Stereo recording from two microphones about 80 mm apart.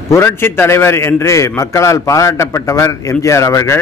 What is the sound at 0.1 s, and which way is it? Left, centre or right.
A man's voice, left.